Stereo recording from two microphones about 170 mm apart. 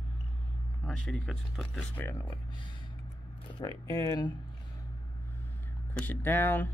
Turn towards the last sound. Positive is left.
turn(degrees=10)  # may be behind; listen again after turning